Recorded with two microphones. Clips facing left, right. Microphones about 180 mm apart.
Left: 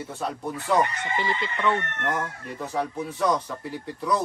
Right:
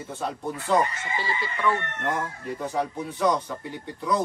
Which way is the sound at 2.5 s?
Centre (ahead or behind).